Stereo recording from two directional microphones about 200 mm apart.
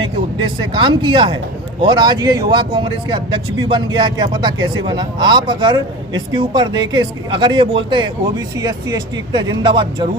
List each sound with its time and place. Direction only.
0.0 s speech: 25° right (ahead or behind)